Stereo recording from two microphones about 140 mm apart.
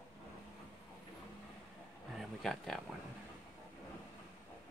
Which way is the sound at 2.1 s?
Centre (ahead or behind).